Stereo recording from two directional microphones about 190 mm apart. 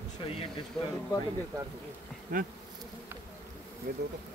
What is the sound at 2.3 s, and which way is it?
Bee, 45° right (ahead or behind).